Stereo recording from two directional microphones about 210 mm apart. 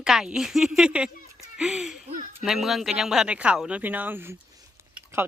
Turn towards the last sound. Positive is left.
turn(degrees=-10)  # may be behind; listen again after turning